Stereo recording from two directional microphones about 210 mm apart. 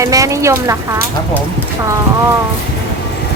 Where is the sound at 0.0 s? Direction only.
15° right (ahead or behind).